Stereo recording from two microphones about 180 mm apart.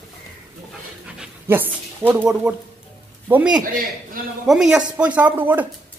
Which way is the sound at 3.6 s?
50° right (ahead or behind).